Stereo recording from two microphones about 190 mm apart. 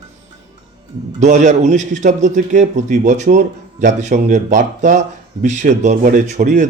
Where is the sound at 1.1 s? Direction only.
40° right (ahead or behind).